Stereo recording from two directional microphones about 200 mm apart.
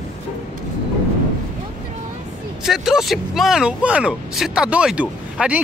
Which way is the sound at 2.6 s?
Centre (ahead or behind).